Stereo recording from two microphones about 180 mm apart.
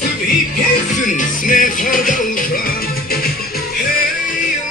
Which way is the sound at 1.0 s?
45° left (ahead or behind).